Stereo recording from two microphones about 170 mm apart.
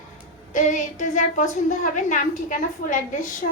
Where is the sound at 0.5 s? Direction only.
45° left (ahead or behind).